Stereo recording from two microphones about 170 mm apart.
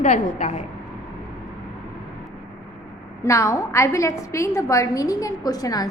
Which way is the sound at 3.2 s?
20° left (ahead or behind).